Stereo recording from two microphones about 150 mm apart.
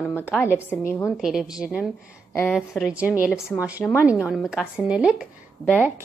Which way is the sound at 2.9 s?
10° right (ahead or behind).